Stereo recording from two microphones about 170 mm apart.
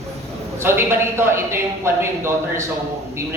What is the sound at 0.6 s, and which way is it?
A man's voice, 15° right (ahead or behind).